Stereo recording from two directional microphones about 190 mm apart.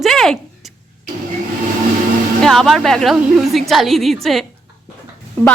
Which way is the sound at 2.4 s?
Centre (ahead or behind).